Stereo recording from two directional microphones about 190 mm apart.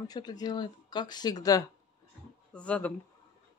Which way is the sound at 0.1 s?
20° left (ahead or behind).